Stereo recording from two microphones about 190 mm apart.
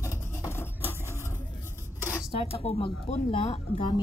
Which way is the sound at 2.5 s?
30° left (ahead or behind).